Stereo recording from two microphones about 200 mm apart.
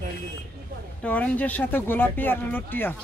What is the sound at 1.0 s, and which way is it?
Speech, 5° left (ahead or behind).